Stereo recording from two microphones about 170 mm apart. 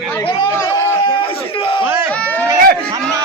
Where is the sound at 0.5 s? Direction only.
15° left (ahead or behind).